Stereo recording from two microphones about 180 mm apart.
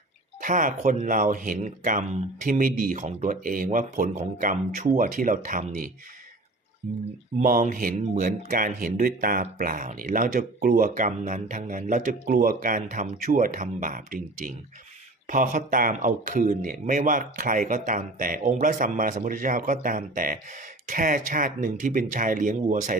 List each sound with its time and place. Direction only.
0.3 s speech: 45° right (ahead or behind)
7.3 s speech: 45° right (ahead or behind)